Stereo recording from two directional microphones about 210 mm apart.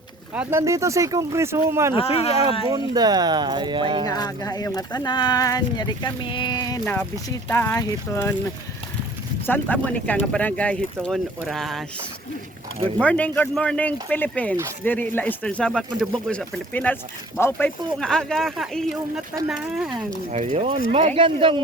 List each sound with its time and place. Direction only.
0.3 s speech: 15° right (ahead or behind)
2.0 s speech: 30° left (ahead or behind)
2.6 s speech: 20° right (ahead or behind)
4.0 s speech: 20° left (ahead or behind)
9.7 s speech: 5° left (ahead or behind)
13.0 s speech: 5° left (ahead or behind)
20.3 s speech: 35° right (ahead or behind)